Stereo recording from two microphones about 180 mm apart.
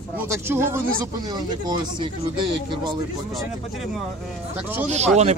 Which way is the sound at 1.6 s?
25° right (ahead or behind).